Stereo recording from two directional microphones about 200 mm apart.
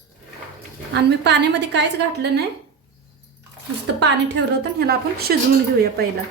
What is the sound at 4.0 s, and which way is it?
A woman's voice, 60° right (ahead or behind).